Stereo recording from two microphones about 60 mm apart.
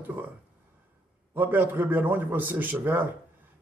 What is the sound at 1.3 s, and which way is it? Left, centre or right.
Speech, right.